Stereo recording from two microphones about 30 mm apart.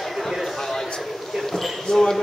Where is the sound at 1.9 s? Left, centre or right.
Centre.